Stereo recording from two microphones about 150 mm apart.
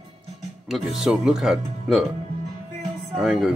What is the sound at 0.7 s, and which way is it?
Speech, centre (ahead or behind).